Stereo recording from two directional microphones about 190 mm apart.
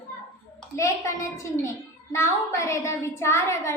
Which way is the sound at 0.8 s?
15° left (ahead or behind).